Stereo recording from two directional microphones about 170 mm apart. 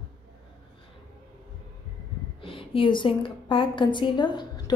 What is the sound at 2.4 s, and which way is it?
A woman's voice, 30° left (ahead or behind).